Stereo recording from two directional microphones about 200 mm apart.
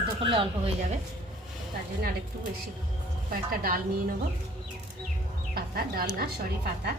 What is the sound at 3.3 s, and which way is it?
Speech, 45° right (ahead or behind).